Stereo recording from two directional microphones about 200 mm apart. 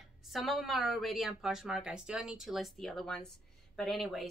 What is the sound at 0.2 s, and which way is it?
Speech, centre (ahead or behind).